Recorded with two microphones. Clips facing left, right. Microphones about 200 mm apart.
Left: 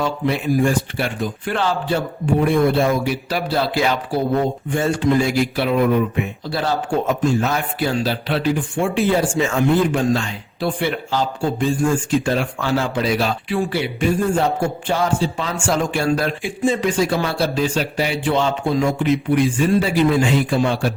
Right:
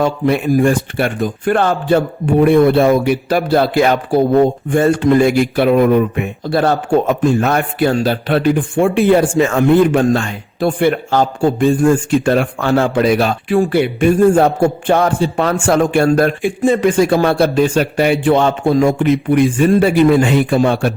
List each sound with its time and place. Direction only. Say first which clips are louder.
0.0 s a man's voice: right 6 dB; 55° right (ahead or behind)